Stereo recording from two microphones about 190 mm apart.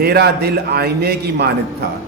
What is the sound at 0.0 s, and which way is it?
A man's voice, 55° right (ahead or behind).